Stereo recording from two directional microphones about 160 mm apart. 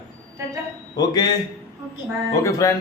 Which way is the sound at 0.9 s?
25° left (ahead or behind).